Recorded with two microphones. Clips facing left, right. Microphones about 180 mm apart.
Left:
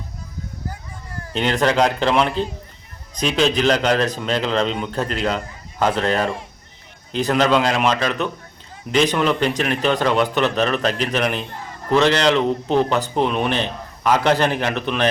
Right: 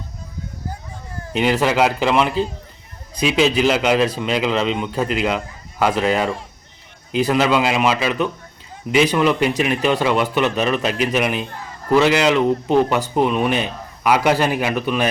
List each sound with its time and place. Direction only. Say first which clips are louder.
1.3 s speech: right 1 dB; 5° right (ahead or behind)